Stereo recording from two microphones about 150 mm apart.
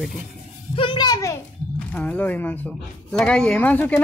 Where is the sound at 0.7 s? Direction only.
30° left (ahead or behind).